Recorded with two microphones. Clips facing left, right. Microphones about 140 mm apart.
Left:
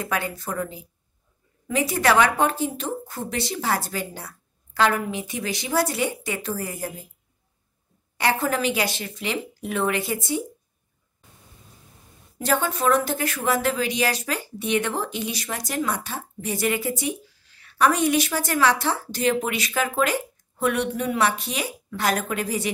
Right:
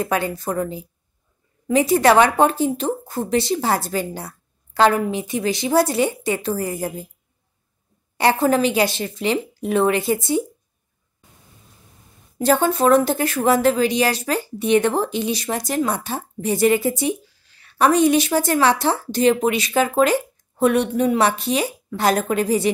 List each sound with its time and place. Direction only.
0.0 s a woman's voice: 30° right (ahead or behind)
8.2 s a woman's voice: 30° right (ahead or behind)
12.4 s a woman's voice: 30° right (ahead or behind)